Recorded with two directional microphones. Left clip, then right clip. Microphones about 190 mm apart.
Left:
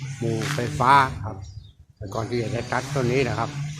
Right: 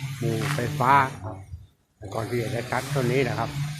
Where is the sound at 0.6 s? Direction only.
20° left (ahead or behind).